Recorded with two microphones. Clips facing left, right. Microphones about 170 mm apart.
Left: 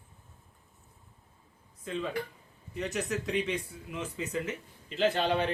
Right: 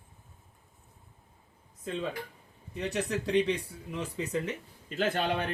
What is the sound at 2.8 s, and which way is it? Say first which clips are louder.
Speech: right 1 dB; 30° right (ahead or behind).